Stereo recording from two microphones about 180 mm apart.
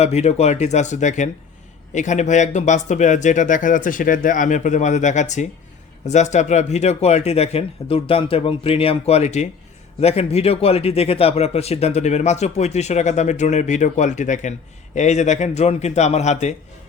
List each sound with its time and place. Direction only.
0.0 s speech: 40° left (ahead or behind)